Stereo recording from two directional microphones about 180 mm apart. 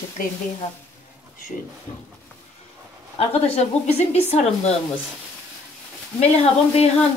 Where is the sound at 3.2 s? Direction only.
35° left (ahead or behind).